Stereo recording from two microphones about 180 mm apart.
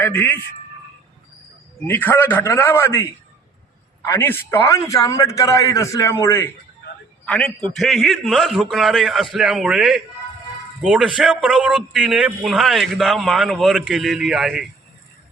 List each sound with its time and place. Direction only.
0.0 s a man's voice: 10° left (ahead or behind)
1.9 s a man's voice: 10° left (ahead or behind)